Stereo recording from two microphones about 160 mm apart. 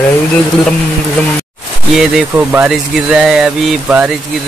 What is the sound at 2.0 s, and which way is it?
Speech, 5° right (ahead or behind).